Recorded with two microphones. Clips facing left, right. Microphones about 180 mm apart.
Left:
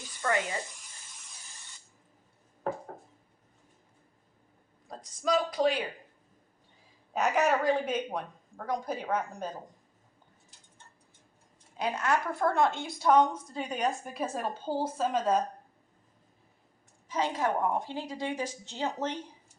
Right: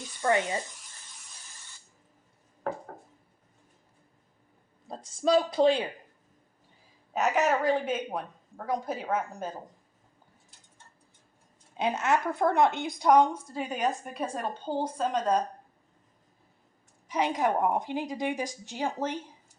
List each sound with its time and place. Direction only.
0.2 s speech: 25° right (ahead or behind)
4.9 s speech: 25° right (ahead or behind)
7.1 s a woman's voice: centre (ahead or behind)
11.8 s a woman's voice: 25° right (ahead or behind); by 15.4 s 5° left (ahead or behind)
17.1 s a woman's voice: 15° right (ahead or behind)